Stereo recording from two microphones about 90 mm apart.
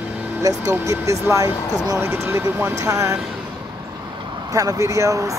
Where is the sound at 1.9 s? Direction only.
25° right (ahead or behind).